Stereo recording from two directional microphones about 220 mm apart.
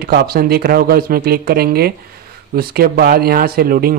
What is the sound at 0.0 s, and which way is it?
Speech, 45° right (ahead or behind).